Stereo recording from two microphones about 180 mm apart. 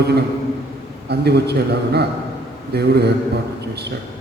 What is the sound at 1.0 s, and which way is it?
A man's voice, 65° right (ahead or behind).